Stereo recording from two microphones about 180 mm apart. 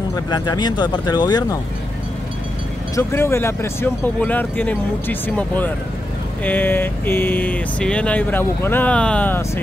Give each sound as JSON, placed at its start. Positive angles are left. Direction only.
{"t": 0.1, "sound": "speech", "side_deg": 20}
{"t": 3.0, "sound": "speech", "side_deg": 15}